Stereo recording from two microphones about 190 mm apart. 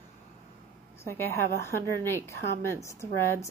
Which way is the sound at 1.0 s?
15° left (ahead or behind).